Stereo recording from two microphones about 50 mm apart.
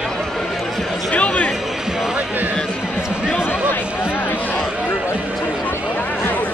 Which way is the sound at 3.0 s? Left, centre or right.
Centre.